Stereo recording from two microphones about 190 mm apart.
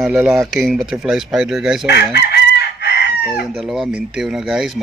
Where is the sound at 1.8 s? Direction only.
60° left (ahead or behind).